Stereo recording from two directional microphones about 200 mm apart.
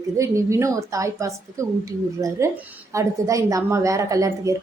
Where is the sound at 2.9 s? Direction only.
15° right (ahead or behind).